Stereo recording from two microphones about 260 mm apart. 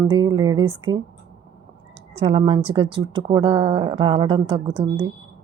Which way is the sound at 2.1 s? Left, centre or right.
Right.